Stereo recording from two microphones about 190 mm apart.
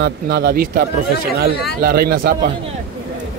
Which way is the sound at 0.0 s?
55° right (ahead or behind).